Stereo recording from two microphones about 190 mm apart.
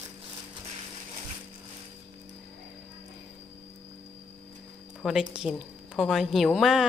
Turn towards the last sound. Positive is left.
turn(degrees=0)  # may be behind; listen again after turning